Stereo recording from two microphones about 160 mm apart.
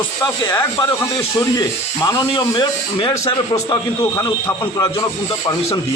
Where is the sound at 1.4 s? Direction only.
20° left (ahead or behind).